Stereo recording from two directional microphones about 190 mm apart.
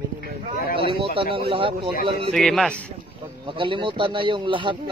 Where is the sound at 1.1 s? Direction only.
25° right (ahead or behind).